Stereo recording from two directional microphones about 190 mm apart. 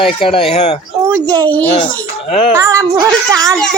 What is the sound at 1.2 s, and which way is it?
Speech, 20° right (ahead or behind).